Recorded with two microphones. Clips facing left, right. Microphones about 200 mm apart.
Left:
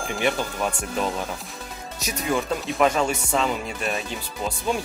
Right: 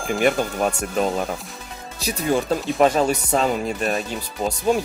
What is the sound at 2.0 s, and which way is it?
Speech, 30° right (ahead or behind).